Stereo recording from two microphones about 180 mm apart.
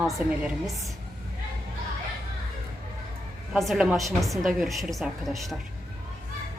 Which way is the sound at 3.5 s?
Centre (ahead or behind).